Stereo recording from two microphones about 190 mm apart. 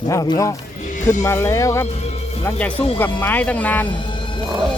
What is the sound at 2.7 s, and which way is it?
Speech, 30° left (ahead or behind).